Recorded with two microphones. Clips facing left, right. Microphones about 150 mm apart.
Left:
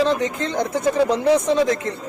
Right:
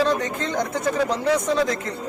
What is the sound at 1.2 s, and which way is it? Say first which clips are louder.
Speech: left 3 dB; 25° left (ahead or behind).